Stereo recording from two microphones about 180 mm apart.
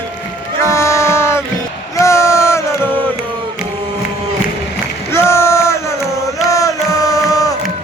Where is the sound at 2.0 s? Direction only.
15° left (ahead or behind).